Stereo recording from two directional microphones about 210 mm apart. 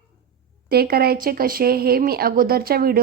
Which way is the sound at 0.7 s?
45° right (ahead or behind).